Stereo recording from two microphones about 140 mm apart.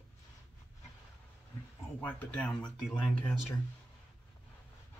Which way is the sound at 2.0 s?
10° left (ahead or behind).